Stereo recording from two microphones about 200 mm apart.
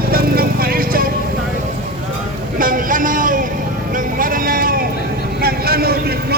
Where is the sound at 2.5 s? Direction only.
45° right (ahead or behind).